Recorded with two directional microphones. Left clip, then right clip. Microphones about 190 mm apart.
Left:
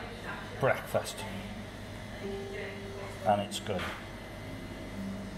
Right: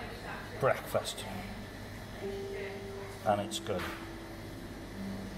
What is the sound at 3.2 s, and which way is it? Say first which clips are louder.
Speech: left 2 dB; 5° left (ahead or behind).